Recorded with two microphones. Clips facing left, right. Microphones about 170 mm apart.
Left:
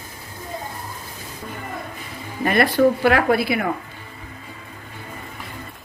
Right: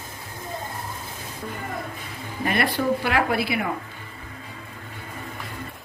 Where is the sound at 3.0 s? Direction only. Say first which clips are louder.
Left 6 dB; 50° left (ahead or behind).